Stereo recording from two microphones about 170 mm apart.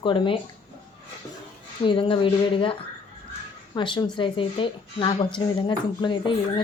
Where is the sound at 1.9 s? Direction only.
30° left (ahead or behind).